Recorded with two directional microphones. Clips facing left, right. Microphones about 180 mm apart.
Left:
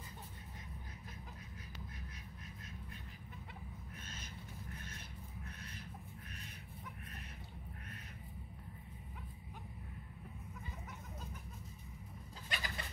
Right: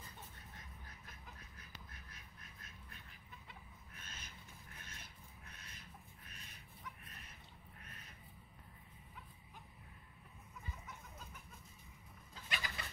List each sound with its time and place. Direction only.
12.4 s bird: 40° left (ahead or behind)